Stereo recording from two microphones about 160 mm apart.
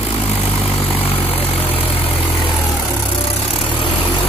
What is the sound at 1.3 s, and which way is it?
Vehicle, 35° left (ahead or behind).